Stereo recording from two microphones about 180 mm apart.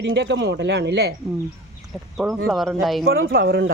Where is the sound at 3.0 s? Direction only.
55° right (ahead or behind).